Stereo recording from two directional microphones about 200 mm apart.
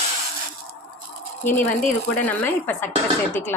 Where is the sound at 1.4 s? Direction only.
10° left (ahead or behind).